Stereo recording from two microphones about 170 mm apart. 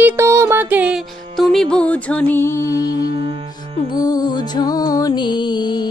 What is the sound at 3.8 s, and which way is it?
Music, 20° left (ahead or behind).